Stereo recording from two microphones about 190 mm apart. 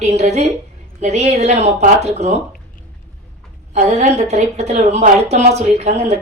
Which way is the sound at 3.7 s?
35° right (ahead or behind).